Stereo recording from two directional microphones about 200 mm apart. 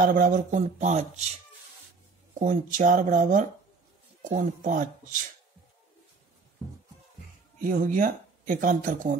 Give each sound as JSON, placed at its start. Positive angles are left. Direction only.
{"t": 0.0, "sound": "speech", "side_deg": -45}
{"t": 2.3, "sound": "speech", "side_deg": -40}
{"t": 7.6, "sound": "speech", "side_deg": -40}